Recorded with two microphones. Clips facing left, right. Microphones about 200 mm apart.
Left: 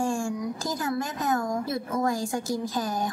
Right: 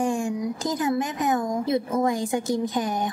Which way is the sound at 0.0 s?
20° right (ahead or behind).